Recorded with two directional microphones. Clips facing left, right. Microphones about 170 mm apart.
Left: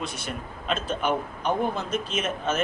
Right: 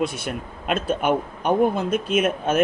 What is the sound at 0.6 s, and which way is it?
A man's voice, 55° right (ahead or behind).